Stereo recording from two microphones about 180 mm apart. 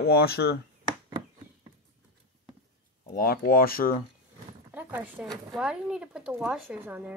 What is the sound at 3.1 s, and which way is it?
Speech, 55° left (ahead or behind).